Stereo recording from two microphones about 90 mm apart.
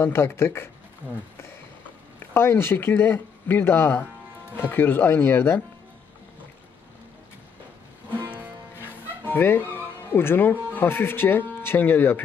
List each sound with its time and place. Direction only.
0.0 s speech: 25° left (ahead or behind)
2.3 s speech: 30° left (ahead or behind)
9.3 s speech: 25° left (ahead or behind)